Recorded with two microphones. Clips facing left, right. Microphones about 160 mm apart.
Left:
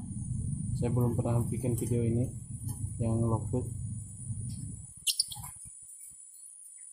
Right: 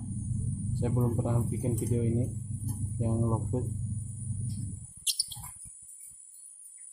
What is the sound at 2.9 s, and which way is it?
Speech, 5° left (ahead or behind).